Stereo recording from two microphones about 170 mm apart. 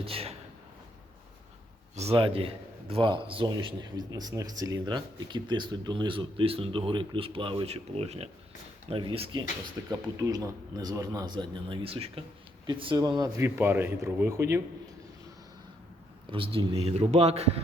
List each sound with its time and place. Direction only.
0.0 s a man's voice: 35° right (ahead or behind)
2.0 s a man's voice: 35° right (ahead or behind)
9.8 s a man's voice: 20° right (ahead or behind)
16.3 s a man's voice: 30° right (ahead or behind)